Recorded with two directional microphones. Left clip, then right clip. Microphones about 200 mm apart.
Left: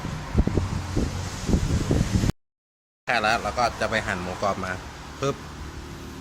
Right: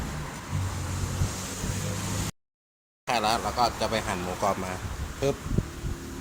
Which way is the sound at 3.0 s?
15° left (ahead or behind).